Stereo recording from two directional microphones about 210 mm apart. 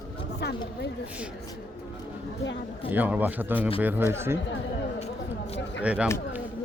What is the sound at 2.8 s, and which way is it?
Speech, 10° right (ahead or behind).